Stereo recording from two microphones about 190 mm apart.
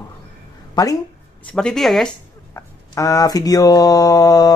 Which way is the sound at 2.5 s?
15° left (ahead or behind).